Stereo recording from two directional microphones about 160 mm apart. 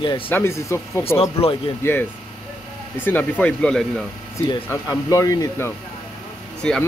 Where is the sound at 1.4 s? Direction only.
40° left (ahead or behind).